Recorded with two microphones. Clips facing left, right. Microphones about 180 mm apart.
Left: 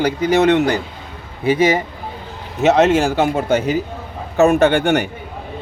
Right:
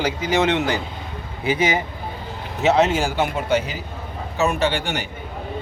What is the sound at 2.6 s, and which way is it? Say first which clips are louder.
A man's voice: left 5 dB; 45° left (ahead or behind).